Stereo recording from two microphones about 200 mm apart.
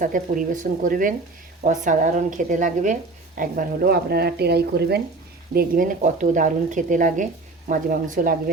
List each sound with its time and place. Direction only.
0.0 s a woman's voice: 40° right (ahead or behind)
5.5 s a woman's voice: 45° right (ahead or behind)